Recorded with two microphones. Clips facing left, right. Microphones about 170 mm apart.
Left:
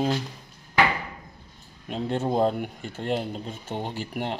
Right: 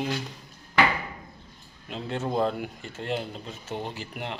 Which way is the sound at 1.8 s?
40° left (ahead or behind).